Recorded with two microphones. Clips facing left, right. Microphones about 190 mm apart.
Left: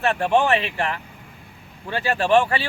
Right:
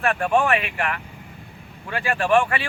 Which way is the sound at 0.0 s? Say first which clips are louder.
Left 1 dB; 25° left (ahead or behind).